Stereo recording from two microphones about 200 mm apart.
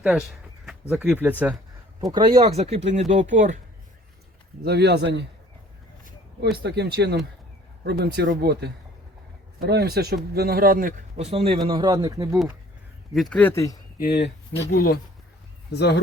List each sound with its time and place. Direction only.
0.0 s speech: 5° right (ahead or behind)
2.0 s speech: 20° right (ahead or behind)
2.4 s speech: 30° right (ahead or behind)
4.6 s a man's voice: 55° right (ahead or behind)
11.3 s speech: 30° right (ahead or behind)
13.3 s speech: 10° left (ahead or behind)
14.0 s speech: 55° left (ahead or behind)